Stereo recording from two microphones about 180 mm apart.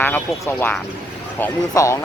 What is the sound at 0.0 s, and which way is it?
Speech, 10° left (ahead or behind).